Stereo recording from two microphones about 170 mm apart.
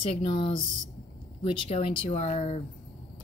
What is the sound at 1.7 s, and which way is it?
Speech, 35° left (ahead or behind).